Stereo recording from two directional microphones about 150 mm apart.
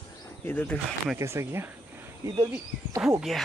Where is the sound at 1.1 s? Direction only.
20° right (ahead or behind).